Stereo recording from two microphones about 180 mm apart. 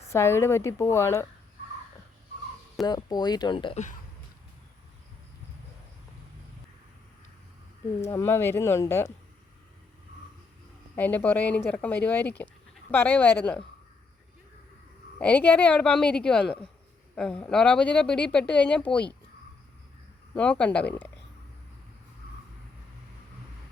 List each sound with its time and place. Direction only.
0.1 s speech: 15° left (ahead or behind)
2.8 s speech: 25° left (ahead or behind)
8.0 s speech: 15° left (ahead or behind)
10.9 s speech: 10° left (ahead or behind)
15.2 s speech: 5° left (ahead or behind)
20.3 s speech: 5° left (ahead or behind)